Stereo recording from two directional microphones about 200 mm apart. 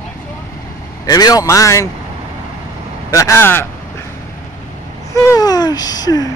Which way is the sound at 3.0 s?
15° left (ahead or behind).